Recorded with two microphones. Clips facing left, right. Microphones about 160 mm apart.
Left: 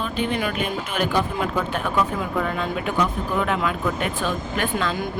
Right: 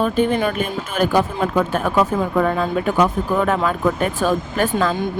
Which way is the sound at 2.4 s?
45° right (ahead or behind).